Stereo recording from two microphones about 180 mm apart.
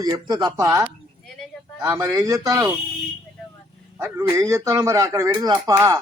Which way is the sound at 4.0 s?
15° right (ahead or behind).